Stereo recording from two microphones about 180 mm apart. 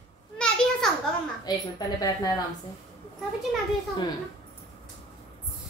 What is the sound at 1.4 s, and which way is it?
Speech, 20° left (ahead or behind).